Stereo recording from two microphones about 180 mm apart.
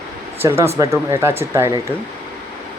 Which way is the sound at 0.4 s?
15° right (ahead or behind).